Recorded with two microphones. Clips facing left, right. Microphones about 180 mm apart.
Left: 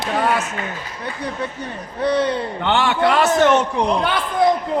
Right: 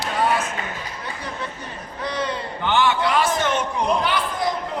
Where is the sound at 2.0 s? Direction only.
65° left (ahead or behind).